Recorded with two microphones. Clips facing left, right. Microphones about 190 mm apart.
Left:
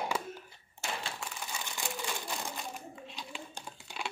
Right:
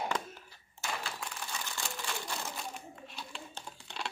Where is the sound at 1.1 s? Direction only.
5° left (ahead or behind).